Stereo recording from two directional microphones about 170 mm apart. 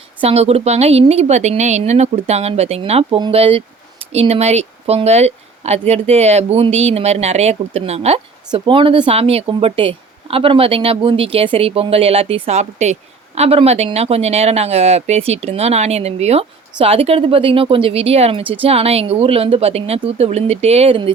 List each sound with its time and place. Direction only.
0.2 s speech: 40° right (ahead or behind)